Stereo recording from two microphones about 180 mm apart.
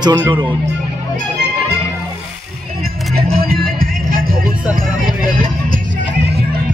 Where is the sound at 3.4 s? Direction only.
55° right (ahead or behind).